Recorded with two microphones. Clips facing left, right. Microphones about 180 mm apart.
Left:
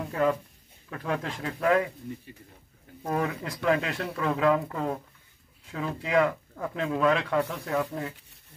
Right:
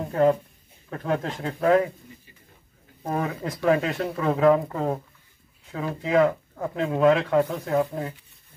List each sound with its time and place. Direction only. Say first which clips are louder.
0.0 s speech: right 5 dB; 35° right (ahead or behind)
3.0 s speech: right 1 dB; 30° right (ahead or behind)